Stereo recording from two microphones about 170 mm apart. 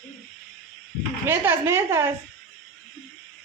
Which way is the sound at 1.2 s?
15° right (ahead or behind).